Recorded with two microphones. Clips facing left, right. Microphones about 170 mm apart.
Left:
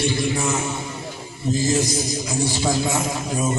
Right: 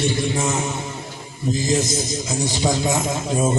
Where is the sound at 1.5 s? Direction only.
20° right (ahead or behind).